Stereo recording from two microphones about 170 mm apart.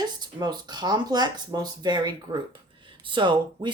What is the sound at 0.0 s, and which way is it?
Speech, 25° right (ahead or behind).